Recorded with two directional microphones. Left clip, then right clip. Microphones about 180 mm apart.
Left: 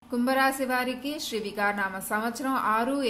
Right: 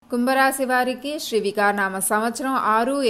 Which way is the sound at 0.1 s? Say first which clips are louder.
Right 6 dB; 40° right (ahead or behind).